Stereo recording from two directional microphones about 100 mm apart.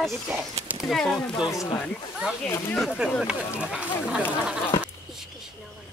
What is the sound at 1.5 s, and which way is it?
Speech, 35° left (ahead or behind).